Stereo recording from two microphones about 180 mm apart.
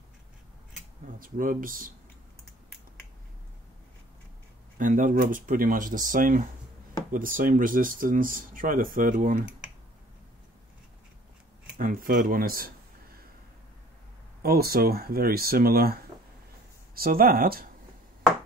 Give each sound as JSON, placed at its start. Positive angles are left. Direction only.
{"t": 1.2, "sound": "speech", "side_deg": -50}
{"t": 4.7, "sound": "speech", "side_deg": -45}
{"t": 11.8, "sound": "speech", "side_deg": -50}
{"t": 14.4, "sound": "speech", "side_deg": -55}